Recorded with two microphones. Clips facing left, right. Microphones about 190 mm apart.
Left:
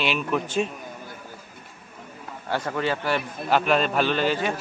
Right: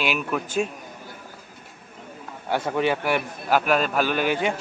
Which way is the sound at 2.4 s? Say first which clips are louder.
Right 3 dB; 15° right (ahead or behind).